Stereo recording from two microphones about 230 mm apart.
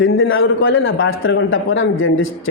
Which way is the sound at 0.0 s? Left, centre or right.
Left.